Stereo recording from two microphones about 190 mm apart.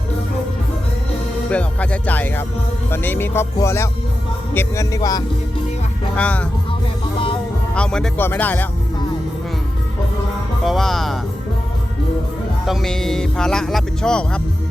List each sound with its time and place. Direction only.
1.5 s music: 5° left (ahead or behind)
6.1 s music: 5° left (ahead or behind)
7.8 s music: 5° left (ahead or behind)
10.6 s speech: centre (ahead or behind)
12.6 s speech: centre (ahead or behind)